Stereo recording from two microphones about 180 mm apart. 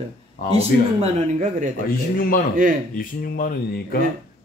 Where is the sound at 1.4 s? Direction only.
45° right (ahead or behind).